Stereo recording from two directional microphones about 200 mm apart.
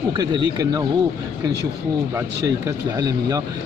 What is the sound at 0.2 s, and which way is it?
Speech, 20° right (ahead or behind).